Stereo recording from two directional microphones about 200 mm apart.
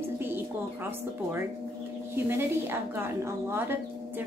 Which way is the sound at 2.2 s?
10° right (ahead or behind).